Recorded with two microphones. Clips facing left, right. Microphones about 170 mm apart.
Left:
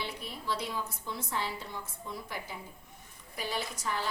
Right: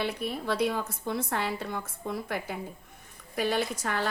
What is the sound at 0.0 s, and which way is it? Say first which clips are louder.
A woman's voice: right 8 dB; 60° right (ahead or behind).